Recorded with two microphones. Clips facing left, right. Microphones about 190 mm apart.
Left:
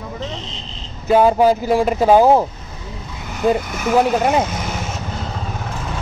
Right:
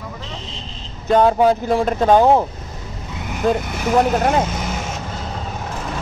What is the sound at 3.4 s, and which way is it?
Speech, centre (ahead or behind).